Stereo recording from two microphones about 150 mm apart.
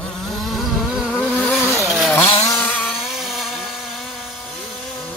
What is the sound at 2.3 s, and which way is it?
Chainsaw, 40° left (ahead or behind).